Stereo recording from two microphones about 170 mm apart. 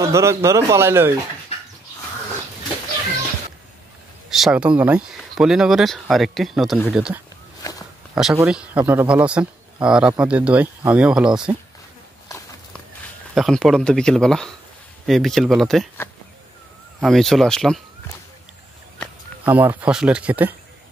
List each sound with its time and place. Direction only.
0.0 s speech: 15° right (ahead or behind)
4.3 s speech: 5° right (ahead or behind)
7.6 s walk: 20° left (ahead or behind)
8.1 s speech: 5° right (ahead or behind)
13.3 s speech: centre (ahead or behind)
17.0 s speech: centre (ahead or behind)
19.4 s speech: 10° right (ahead or behind)